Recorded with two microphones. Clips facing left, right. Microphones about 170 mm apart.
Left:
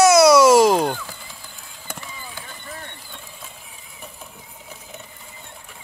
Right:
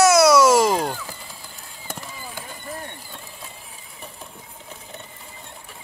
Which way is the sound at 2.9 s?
5° right (ahead or behind).